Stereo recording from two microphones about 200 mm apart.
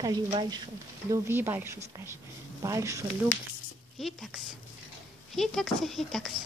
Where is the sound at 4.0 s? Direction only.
Centre (ahead or behind).